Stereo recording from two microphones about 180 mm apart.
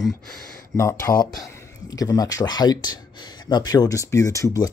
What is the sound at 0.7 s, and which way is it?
Speech, 15° left (ahead or behind).